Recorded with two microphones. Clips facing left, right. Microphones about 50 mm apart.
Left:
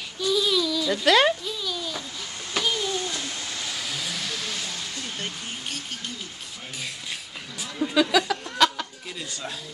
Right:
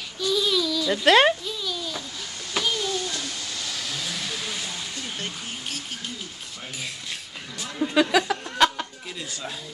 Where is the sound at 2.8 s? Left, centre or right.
Centre.